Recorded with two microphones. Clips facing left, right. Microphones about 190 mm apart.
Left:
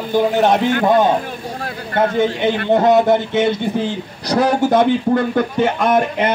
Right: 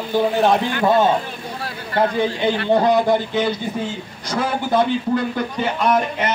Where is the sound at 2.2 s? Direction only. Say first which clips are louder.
Left 3 dB; 20° left (ahead or behind).